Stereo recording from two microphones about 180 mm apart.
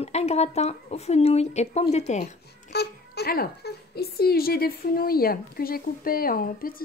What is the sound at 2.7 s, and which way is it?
A child's voice, 65° left (ahead or behind).